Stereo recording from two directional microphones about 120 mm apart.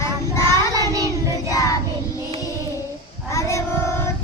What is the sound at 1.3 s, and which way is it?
Child singing, 30° left (ahead or behind).